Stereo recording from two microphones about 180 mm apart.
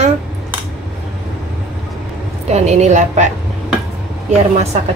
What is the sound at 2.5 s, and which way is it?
Speech, 40° right (ahead or behind).